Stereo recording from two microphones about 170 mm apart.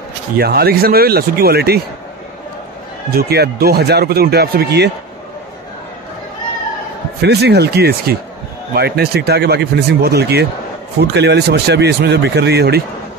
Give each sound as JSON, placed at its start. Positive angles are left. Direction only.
{"t": 0.4, "sound": "speech", "side_deg": -65}
{"t": 3.1, "sound": "speech", "side_deg": -65}
{"t": 7.2, "sound": "speech", "side_deg": -75}